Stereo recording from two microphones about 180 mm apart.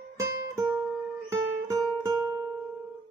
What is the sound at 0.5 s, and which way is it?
Music, 15° right (ahead or behind).